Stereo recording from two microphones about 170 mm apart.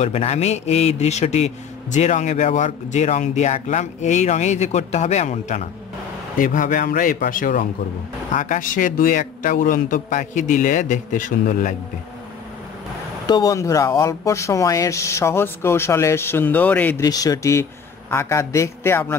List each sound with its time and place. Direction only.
0.0 s a man's voice: 40° left (ahead or behind)
13.3 s speech: 20° left (ahead or behind)
17.0 s speech: 20° left (ahead or behind)